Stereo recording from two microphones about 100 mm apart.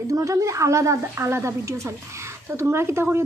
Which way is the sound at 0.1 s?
35° right (ahead or behind).